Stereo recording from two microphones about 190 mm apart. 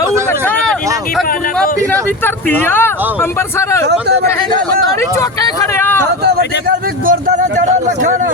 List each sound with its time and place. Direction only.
1.9 s speech: 10° left (ahead or behind)
4.9 s speech: 15° left (ahead or behind)
7.0 s speech: 45° right (ahead or behind)